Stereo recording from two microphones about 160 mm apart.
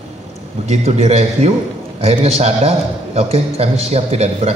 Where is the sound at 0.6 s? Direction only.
45° right (ahead or behind).